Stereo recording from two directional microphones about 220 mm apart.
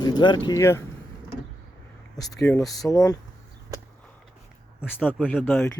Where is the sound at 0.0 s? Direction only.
20° left (ahead or behind).